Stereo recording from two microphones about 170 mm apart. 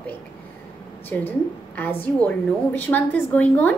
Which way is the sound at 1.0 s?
10° left (ahead or behind).